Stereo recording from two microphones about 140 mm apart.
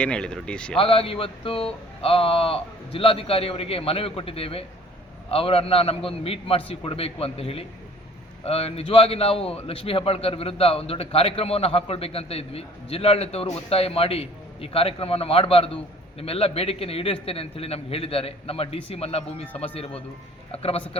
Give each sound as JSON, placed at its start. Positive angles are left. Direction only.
{"t": 0.0, "sound": "speech", "side_deg": 5}
{"t": 0.8, "sound": "a man's voice", "side_deg": 40}